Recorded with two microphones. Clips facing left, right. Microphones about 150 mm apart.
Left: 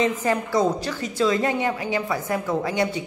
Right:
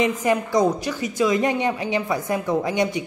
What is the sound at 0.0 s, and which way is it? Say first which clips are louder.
A woman's voice: right 2 dB; 15° right (ahead or behind).